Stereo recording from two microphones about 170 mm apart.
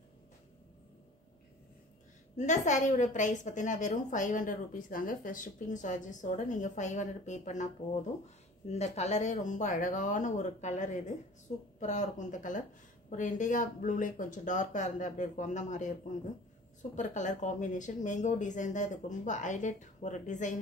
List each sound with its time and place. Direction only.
2.3 s a woman's voice: 45° left (ahead or behind)
16.9 s a woman's voice: 45° left (ahead or behind)